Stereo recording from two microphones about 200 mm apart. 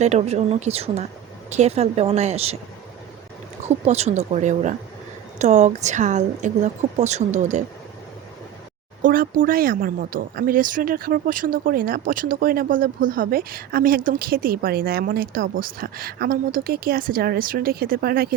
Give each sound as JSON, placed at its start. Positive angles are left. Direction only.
{"t": 0.0, "sound": "a woman's voice", "side_deg": -35}
{"t": 3.8, "sound": "a woman's voice", "side_deg": -35}
{"t": 9.0, "sound": "speech", "side_deg": -45}